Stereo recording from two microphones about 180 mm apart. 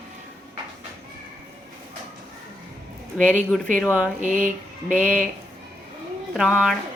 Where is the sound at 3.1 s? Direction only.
Centre (ahead or behind).